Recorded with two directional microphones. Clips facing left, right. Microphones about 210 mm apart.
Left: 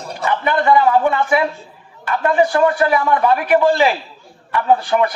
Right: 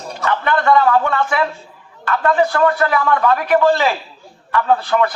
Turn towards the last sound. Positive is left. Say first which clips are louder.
# left 1 dB
turn(degrees=15)  # may be behind; listen again after turning